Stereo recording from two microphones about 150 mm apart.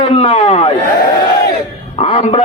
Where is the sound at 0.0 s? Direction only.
40° left (ahead or behind).